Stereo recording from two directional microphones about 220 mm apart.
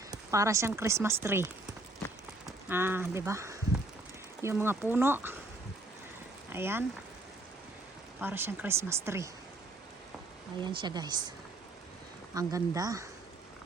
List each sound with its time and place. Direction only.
0.1 s speech: 15° right (ahead or behind)
2.5 s speech: 10° right (ahead or behind)
6.5 s speech: 10° right (ahead or behind)
8.2 s speech: 10° right (ahead or behind)
10.6 s speech: 20° right (ahead or behind)
12.3 s speech: 15° right (ahead or behind)